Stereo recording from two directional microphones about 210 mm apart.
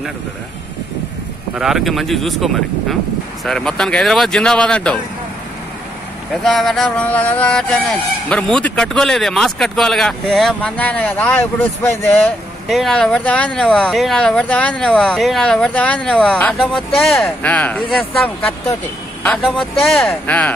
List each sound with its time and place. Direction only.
1.6 s speech: centre (ahead or behind)
6.4 s speech: centre (ahead or behind)